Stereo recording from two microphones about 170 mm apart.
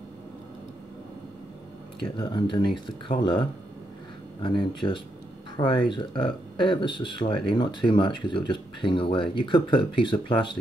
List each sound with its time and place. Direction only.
2.0 s speech: 30° left (ahead or behind)